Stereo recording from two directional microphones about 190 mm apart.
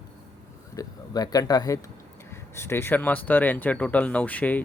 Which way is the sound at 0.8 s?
20° left (ahead or behind).